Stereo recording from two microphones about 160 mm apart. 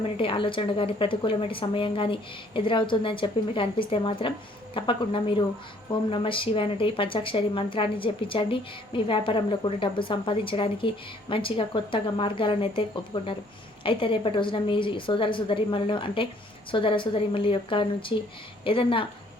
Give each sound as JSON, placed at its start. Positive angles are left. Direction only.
{"t": 0.2, "sound": "speech", "side_deg": 35}